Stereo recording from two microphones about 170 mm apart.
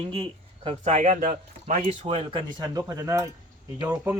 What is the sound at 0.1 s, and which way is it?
Speech, 30° right (ahead or behind).